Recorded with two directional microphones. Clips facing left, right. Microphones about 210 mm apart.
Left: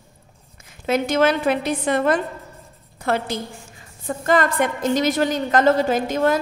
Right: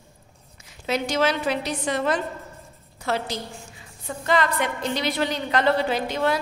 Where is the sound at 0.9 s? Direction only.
50° left (ahead or behind).